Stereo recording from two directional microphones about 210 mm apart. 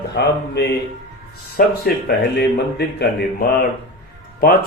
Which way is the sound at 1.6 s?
40° left (ahead or behind).